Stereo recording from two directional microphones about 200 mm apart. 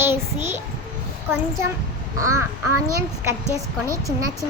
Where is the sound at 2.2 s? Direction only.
15° right (ahead or behind).